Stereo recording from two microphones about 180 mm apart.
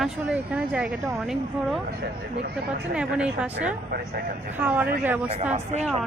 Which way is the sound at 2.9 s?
5° right (ahead or behind).